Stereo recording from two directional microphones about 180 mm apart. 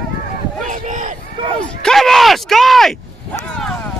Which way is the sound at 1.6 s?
5° left (ahead or behind).